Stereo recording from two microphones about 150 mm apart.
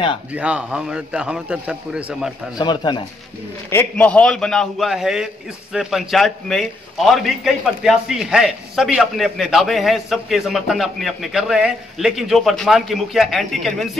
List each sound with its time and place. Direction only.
0.3 s a man's voice: 10° right (ahead or behind)
2.6 s speech: 30° left (ahead or behind)
3.7 s a man's voice: 10° left (ahead or behind)